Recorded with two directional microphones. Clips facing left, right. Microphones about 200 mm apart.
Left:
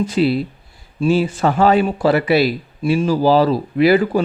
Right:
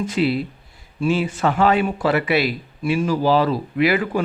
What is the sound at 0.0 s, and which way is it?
Speech, 35° left (ahead or behind).